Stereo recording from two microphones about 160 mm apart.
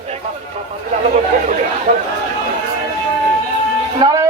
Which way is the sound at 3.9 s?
25° right (ahead or behind).